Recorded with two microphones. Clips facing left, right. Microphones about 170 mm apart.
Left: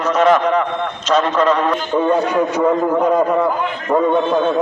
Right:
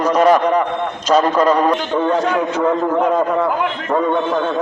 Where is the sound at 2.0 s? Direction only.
10° left (ahead or behind).